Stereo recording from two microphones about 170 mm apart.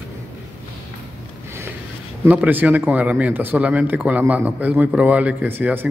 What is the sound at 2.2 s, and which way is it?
Speech, 10° right (ahead or behind).